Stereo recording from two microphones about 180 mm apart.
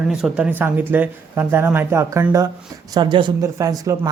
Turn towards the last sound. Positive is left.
turn(degrees=-20)  # may be behind; listen again after turning